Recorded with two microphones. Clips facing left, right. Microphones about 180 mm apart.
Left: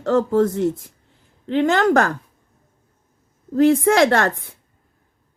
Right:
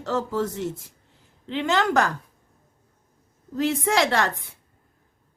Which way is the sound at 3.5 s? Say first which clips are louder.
Left 8 dB; 55° left (ahead or behind).